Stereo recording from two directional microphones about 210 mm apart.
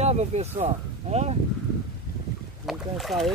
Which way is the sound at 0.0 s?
30° right (ahead or behind).